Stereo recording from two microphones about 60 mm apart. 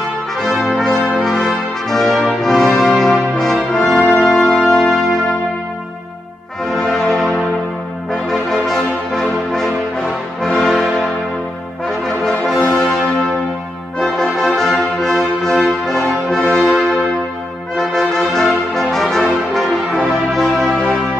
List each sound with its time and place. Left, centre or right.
0.4 s brass instrument: centre
2.8 s music: centre
6.6 s brass instrument: centre
8.3 s music: centre
11.9 s brass instrument: centre
13.9 s music: centre
14.5 s brass instrument: centre
17.7 s music: centre